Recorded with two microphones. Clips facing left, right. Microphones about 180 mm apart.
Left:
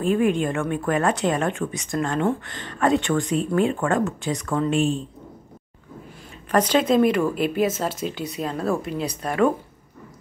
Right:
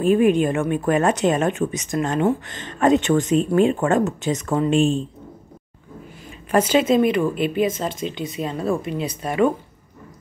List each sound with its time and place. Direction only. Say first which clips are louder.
0.0 s speech: right 4 dB; 20° right (ahead or behind)
6.5 s speech: right 2 dB; 5° right (ahead or behind)